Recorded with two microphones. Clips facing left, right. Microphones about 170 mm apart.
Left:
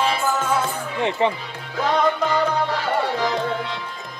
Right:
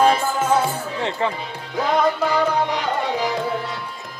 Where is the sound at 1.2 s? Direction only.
20° left (ahead or behind).